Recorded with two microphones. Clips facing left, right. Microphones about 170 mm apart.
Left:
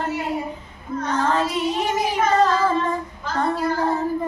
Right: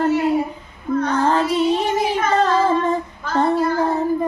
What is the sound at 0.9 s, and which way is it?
Child singing, 60° right (ahead or behind).